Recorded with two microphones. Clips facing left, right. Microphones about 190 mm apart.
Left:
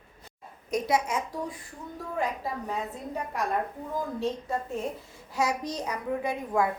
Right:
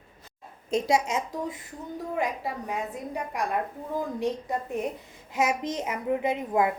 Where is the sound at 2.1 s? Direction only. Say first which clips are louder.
Even; 15° right (ahead or behind).